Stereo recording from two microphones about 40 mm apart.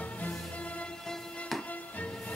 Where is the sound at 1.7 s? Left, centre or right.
Left.